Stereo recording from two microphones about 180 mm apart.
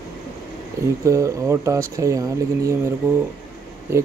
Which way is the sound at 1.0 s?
15° right (ahead or behind).